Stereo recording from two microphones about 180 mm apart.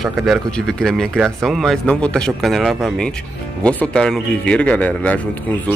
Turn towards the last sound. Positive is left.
turn(degrees=10)  # may be behind; listen again after turning